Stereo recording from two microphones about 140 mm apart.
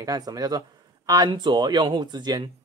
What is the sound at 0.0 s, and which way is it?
Speech, 25° right (ahead or behind).